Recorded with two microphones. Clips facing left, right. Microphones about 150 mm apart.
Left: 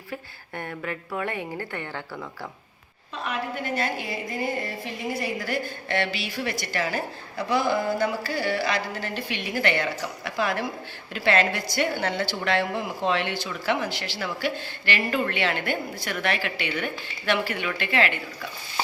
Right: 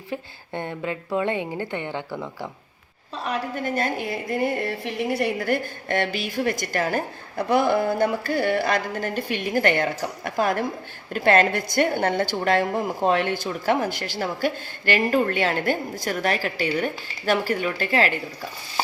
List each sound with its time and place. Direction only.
0.1 s a woman's voice: 25° right (ahead or behind)
3.2 s a woman's voice: 45° right (ahead or behind)